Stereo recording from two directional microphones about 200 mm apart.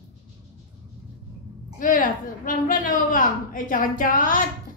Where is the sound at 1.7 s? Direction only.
40° left (ahead or behind).